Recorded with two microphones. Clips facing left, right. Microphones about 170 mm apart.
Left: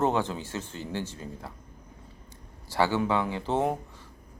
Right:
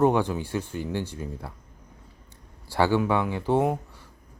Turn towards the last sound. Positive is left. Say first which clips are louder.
# right 4 dB
turn(degrees=-5)  # may be behind; listen again after turning